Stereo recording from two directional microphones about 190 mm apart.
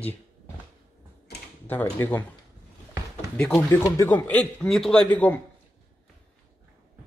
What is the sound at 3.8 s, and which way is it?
A man's voice, 15° left (ahead or behind).